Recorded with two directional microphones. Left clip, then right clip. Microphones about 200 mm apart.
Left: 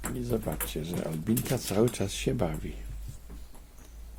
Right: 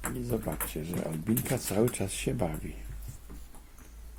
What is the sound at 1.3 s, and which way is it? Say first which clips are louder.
Speech: left 1 dB; 15° left (ahead or behind).